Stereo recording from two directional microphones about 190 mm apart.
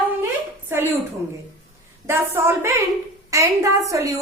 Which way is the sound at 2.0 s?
15° right (ahead or behind).